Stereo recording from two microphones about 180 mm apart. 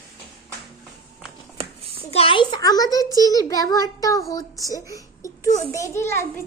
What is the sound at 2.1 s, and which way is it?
A child's voice, 30° left (ahead or behind).